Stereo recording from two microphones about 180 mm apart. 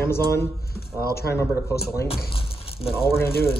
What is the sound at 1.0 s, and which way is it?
Speech, 60° left (ahead or behind).